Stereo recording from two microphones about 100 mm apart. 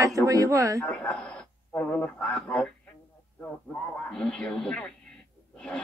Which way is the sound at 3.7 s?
15° left (ahead or behind).